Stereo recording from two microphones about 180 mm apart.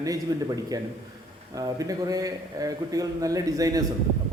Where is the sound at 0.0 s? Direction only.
20° right (ahead or behind).